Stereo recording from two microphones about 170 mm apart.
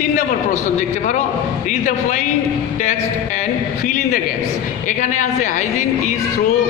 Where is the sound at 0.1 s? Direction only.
45° left (ahead or behind).